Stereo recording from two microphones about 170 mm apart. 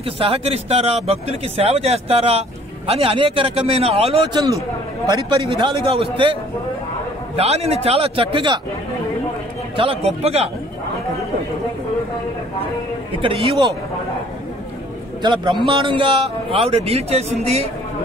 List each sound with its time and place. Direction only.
0.0 s speech: 35° right (ahead or behind)
7.3 s speech: 35° right (ahead or behind)
9.8 s speech: 35° right (ahead or behind)
13.2 s speech: 30° right (ahead or behind)
15.2 s speech: 25° right (ahead or behind)